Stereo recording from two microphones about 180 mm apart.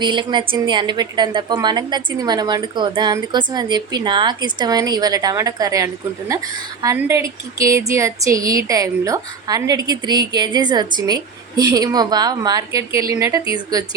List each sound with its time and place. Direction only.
0.0 s a woman's voice: 25° right (ahead or behind)